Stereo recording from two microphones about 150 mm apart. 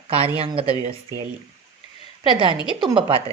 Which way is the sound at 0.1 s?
40° right (ahead or behind).